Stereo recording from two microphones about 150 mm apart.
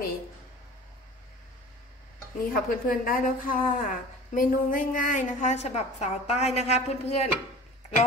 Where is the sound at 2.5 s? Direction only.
75° left (ahead or behind); by 7.2 s 45° left (ahead or behind).